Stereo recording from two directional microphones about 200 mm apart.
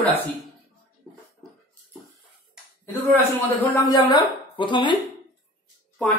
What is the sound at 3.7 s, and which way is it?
Speech, 20° left (ahead or behind).